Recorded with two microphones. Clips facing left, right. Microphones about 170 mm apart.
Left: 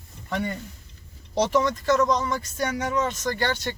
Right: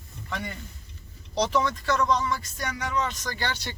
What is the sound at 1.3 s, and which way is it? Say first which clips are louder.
Speech: left 3 dB; 45° left (ahead or behind).